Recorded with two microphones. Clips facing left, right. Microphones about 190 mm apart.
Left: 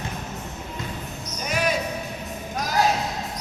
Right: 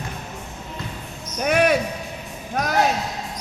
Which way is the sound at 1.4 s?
60° right (ahead or behind).